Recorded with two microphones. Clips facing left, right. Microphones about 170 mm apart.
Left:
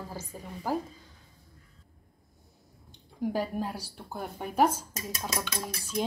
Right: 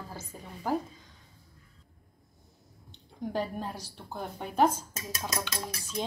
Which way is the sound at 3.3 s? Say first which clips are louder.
Right 1 dB; 10° left (ahead or behind).